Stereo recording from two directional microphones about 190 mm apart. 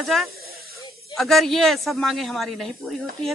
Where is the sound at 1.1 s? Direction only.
Centre (ahead or behind).